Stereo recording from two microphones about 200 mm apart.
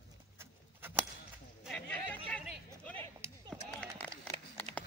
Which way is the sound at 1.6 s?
5° left (ahead or behind).